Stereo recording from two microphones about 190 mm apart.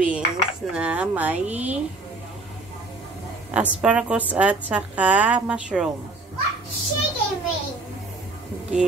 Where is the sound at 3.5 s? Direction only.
5° right (ahead or behind).